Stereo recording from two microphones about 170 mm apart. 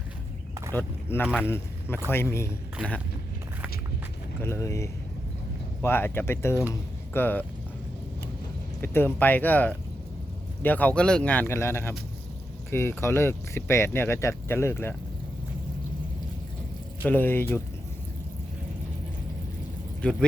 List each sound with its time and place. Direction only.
0.8 s speech: 10° left (ahead or behind)
4.4 s speech: 15° left (ahead or behind)
8.8 s speech: 15° left (ahead or behind)
17.1 s speech: 10° left (ahead or behind)
20.0 s speech: 5° left (ahead or behind)